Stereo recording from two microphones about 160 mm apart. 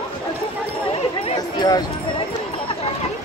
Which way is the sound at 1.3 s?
25° left (ahead or behind).